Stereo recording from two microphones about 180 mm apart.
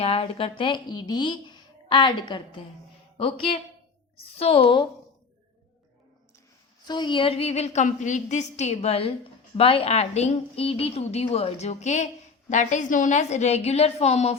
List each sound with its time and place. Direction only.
0.0 s a woman's voice: 35° left (ahead or behind)
6.8 s a woman's voice: 25° left (ahead or behind)